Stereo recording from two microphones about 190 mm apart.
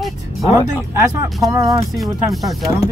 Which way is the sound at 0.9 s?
15° right (ahead or behind).